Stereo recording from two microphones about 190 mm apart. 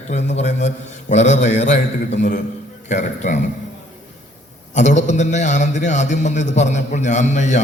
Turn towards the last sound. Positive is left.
turn(degrees=40)  # may be behind; listen again after turning